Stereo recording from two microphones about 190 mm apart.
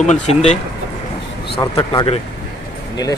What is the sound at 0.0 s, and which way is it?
Speech, 35° left (ahead or behind).